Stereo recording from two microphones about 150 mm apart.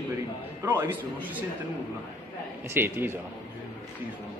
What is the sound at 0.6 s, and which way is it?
Speech, 15° right (ahead or behind).